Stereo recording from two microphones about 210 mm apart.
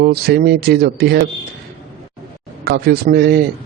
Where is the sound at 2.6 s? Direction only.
50° right (ahead or behind).